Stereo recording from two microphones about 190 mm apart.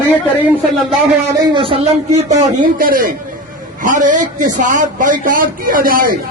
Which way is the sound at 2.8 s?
45° right (ahead or behind).